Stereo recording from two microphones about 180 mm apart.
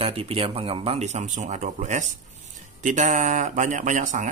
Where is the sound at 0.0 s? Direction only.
30° right (ahead or behind).